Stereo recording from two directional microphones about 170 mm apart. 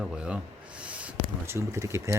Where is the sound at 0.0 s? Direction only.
5° right (ahead or behind).